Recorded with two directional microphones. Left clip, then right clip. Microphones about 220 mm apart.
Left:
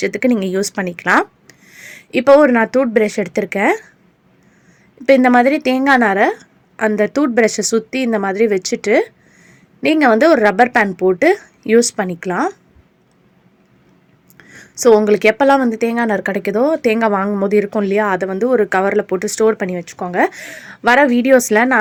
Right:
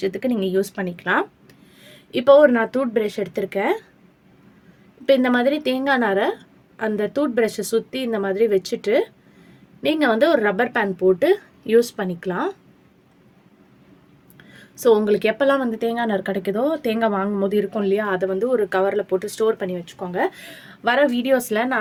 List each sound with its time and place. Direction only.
0.0 s speech: 40° left (ahead or behind)
5.0 s speech: 40° left (ahead or behind)
14.3 s speech: 40° left (ahead or behind)